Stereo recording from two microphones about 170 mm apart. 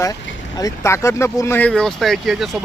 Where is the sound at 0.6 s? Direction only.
15° left (ahead or behind).